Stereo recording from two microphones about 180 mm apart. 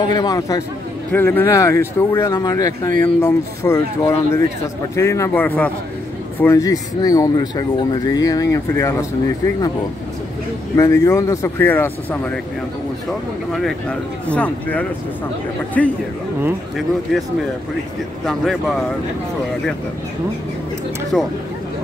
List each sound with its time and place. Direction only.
0.0 s speech: 25° left (ahead or behind)
10.8 s speech: 15° left (ahead or behind)
13.5 s speech: centre (ahead or behind)
18.2 s speech: centre (ahead or behind)
21.1 s speech: 5° left (ahead or behind)